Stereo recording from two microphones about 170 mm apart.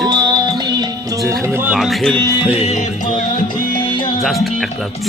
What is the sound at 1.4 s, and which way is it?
Speech, 15° right (ahead or behind).